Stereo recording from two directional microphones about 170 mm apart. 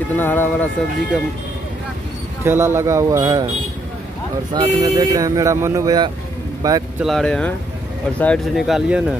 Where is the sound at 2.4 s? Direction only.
15° right (ahead or behind).